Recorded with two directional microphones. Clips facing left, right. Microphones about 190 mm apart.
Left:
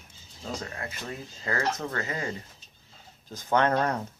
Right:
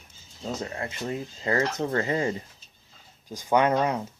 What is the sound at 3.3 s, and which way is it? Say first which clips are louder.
Speech: right 2 dB; 10° right (ahead or behind).